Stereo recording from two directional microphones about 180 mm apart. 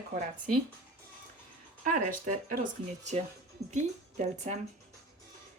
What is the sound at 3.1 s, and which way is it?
Speech, 35° right (ahead or behind).